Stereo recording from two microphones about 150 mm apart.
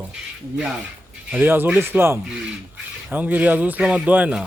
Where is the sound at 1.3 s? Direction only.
10° right (ahead or behind).